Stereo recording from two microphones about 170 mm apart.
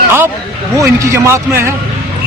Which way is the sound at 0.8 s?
15° right (ahead or behind).